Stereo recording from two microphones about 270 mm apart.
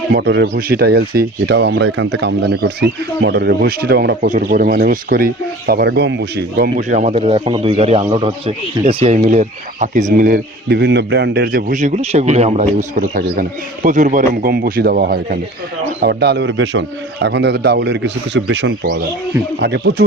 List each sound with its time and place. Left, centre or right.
0.1 s speech: right